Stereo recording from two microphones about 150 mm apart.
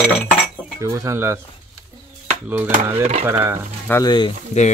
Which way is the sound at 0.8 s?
20° right (ahead or behind).